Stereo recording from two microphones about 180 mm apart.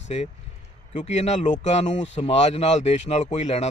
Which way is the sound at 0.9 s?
40° left (ahead or behind).